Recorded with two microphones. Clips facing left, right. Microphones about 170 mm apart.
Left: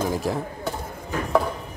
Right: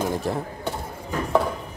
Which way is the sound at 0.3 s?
Centre (ahead or behind).